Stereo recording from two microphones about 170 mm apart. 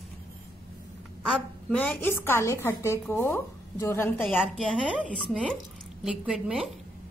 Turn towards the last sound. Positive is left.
turn(degrees=-5)  # may be behind; listen again after turning